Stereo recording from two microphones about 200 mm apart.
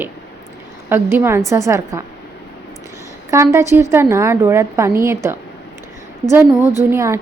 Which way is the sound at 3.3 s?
15° right (ahead or behind).